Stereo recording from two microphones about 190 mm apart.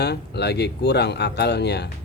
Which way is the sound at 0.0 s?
60° left (ahead or behind).